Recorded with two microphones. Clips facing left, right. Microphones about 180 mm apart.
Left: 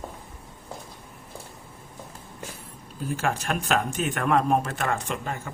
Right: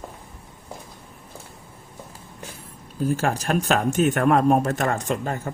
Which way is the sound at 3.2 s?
40° right (ahead or behind).